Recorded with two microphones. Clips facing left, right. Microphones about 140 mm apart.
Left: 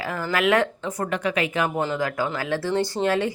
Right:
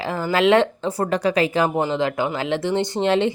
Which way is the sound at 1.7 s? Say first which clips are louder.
Right 4 dB; 20° right (ahead or behind).